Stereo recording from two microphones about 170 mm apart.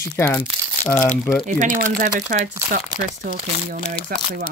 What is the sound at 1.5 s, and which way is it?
Speech, 50° right (ahead or behind).